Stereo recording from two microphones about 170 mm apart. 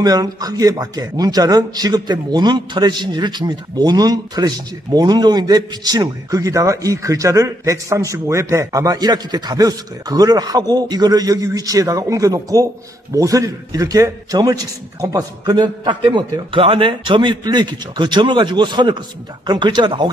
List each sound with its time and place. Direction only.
0.0 s speech: 20° right (ahead or behind)